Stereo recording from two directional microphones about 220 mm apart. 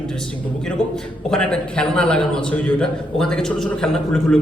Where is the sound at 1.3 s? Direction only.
5° left (ahead or behind).